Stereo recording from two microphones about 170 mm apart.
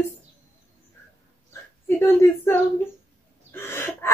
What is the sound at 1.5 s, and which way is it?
Speech, 15° left (ahead or behind).